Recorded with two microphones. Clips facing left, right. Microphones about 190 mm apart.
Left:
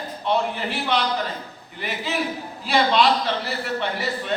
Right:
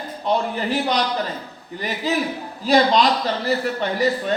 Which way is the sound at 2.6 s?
40° right (ahead or behind).